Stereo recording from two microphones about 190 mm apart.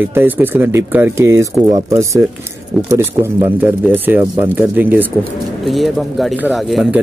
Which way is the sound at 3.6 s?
10° right (ahead or behind).